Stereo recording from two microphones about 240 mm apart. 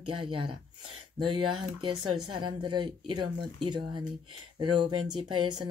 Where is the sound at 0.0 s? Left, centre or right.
Centre.